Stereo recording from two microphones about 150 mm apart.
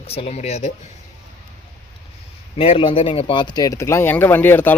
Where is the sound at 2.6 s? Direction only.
40° left (ahead or behind).